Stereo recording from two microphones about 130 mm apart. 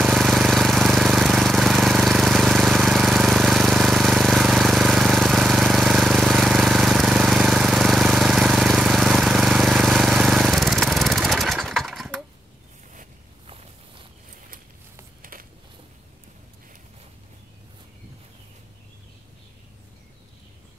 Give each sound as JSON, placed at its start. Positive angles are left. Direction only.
{"t": 0.0, "sound": "jackhammer", "side_deg": -5}
{"t": 13.5, "sound": "walk", "side_deg": -45}